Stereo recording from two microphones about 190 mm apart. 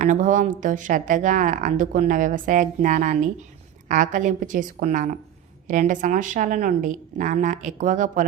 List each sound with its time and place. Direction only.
0.0 s a woman's voice: 40° right (ahead or behind)